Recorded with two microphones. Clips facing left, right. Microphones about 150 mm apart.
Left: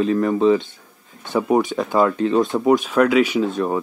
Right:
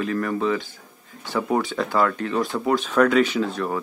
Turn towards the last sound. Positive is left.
turn(degrees=20)  # may be behind; listen again after turning